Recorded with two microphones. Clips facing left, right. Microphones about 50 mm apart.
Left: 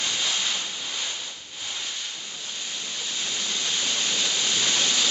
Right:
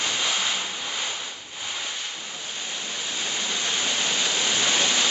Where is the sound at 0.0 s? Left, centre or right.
Centre.